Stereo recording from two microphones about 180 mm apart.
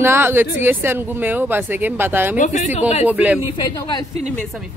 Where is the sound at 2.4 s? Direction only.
40° left (ahead or behind).